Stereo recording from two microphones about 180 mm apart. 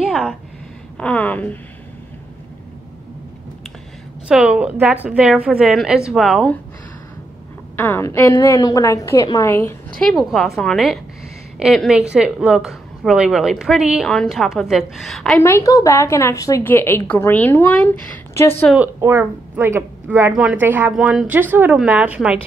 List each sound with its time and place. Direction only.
0.0 s a sound: 5° right (ahead or behind)
0.9 s a woman's voice: 5° left (ahead or behind)
4.3 s a woman's voice: 5° right (ahead or behind)
7.7 s a woman's voice: 10° left (ahead or behind)
9.9 s a woman's voice: centre (ahead or behind)
15.4 s a woman's voice: 15° left (ahead or behind)
18.9 s a woman's voice: 15° right (ahead or behind)